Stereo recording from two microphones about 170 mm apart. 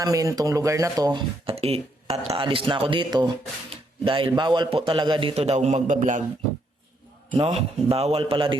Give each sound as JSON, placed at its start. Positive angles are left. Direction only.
{"t": 0.0, "sound": "speech", "side_deg": -20}
{"t": 1.5, "sound": "speech", "side_deg": -35}
{"t": 7.3, "sound": "speech", "side_deg": -35}